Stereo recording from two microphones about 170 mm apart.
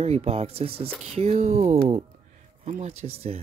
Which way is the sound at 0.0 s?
35° right (ahead or behind).